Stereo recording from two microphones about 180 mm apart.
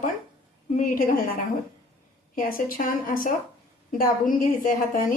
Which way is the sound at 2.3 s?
50° left (ahead or behind).